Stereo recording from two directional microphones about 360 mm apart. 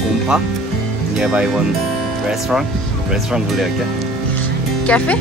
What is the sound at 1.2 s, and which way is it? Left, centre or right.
Speech, centre.